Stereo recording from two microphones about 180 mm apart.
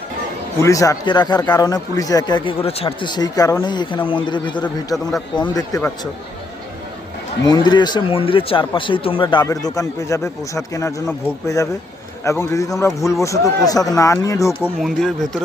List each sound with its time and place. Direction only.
0.6 s speech: 20° left (ahead or behind)
7.4 s speech: 25° left (ahead or behind)
14.8 s speech: centre (ahead or behind)